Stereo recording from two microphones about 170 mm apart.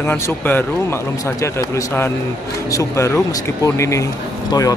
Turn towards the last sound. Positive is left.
turn(degrees=20)  # may be behind; listen again after turning